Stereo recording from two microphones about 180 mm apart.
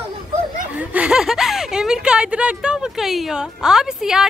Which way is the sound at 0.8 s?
5° right (ahead or behind).